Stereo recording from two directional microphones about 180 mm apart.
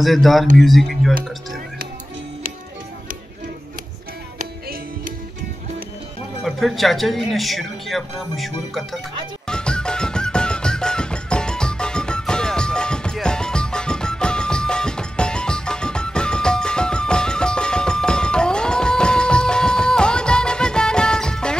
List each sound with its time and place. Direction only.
0.0 s speech: centre (ahead or behind)
4.4 s music: 50° right (ahead or behind)
6.4 s speech: centre (ahead or behind)
9.5 s music: 5° left (ahead or behind)